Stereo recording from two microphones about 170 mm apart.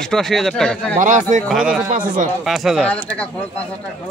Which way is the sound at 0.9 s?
50° right (ahead or behind).